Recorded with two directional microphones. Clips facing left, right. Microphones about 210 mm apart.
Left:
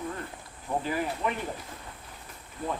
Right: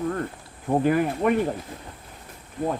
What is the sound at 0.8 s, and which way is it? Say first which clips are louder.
Speech: right 10 dB; 55° right (ahead or behind).